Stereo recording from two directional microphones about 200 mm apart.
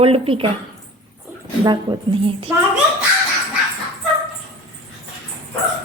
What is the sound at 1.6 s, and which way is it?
Speech, 25° right (ahead or behind).